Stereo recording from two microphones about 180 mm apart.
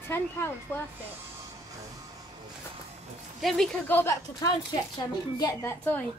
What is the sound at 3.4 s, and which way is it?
A woman's voice, centre (ahead or behind).